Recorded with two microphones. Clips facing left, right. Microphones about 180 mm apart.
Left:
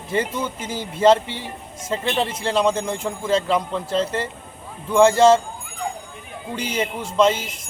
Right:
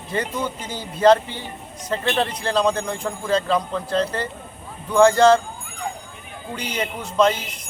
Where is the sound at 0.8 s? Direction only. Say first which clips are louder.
Even; 25° left (ahead or behind).